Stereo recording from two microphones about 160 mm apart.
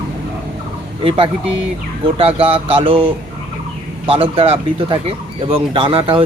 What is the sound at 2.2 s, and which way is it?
Speech, 35° right (ahead or behind).